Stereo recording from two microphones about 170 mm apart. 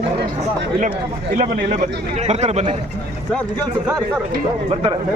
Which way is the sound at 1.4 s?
50° right (ahead or behind).